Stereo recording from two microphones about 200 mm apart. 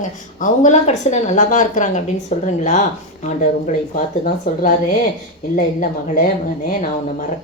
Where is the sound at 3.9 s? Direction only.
40° left (ahead or behind).